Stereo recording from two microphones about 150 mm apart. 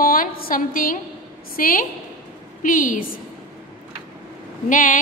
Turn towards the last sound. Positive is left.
turn(degrees=60)  # may be behind; listen again after turning